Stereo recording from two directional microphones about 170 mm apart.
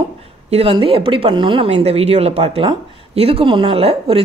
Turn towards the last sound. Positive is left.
turn(degrees=-35)  # may be behind; listen again after turning